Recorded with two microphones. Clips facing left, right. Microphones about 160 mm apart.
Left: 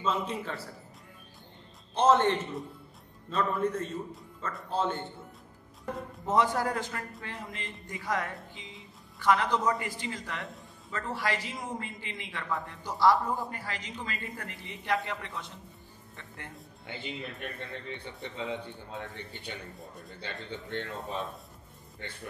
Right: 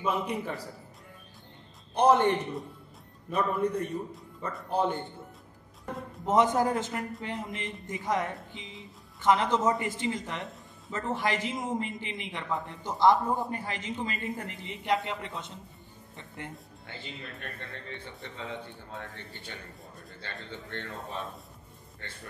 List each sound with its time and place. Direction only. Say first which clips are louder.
0.0 s a man's voice: right 1 dB; 15° right (ahead or behind)
2.0 s a man's voice: right 1 dB; 15° right (ahead or behind)
6.2 s a man's voice: right 3 dB; 20° right (ahead or behind)
16.8 s speech: left 5 dB; 20° left (ahead or behind)
20.5 s speech: left 3 dB; 20° left (ahead or behind)